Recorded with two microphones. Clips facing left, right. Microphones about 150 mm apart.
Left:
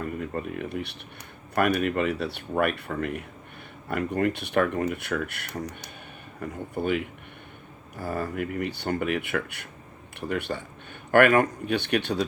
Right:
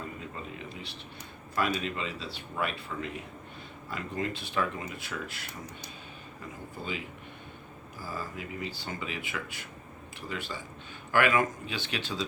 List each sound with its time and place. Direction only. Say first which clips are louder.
0.0 s speech: left 9 dB; 60° left (ahead or behind)